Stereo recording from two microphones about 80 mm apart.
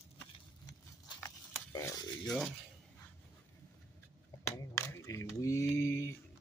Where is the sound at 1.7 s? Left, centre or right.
Left.